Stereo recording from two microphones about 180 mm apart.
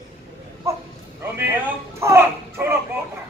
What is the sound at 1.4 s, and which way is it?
Speech, 15° right (ahead or behind).